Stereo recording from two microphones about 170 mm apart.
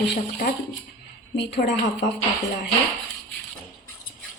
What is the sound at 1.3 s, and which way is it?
Speech, 90° left.